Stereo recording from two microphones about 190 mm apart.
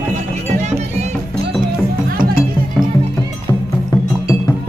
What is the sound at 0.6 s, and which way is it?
Music, 35° right (ahead or behind).